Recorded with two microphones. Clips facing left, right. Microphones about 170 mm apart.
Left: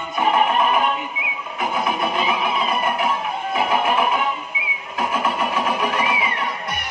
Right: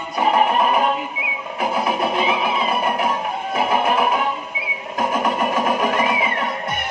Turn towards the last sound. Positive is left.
turn(degrees=-50)  # may be behind; listen again after turning